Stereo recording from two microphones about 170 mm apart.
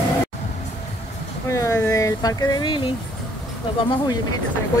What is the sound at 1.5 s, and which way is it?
Speech, 15° left (ahead or behind).